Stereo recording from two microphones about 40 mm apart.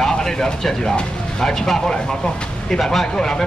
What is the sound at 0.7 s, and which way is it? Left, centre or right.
Speech, centre.